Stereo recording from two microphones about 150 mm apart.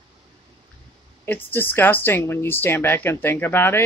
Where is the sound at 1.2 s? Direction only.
15° left (ahead or behind).